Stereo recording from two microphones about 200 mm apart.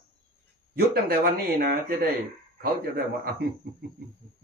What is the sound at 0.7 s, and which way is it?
Speech, 50° right (ahead or behind).